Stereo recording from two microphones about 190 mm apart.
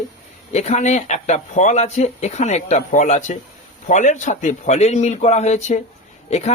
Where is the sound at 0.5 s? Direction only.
35° left (ahead or behind).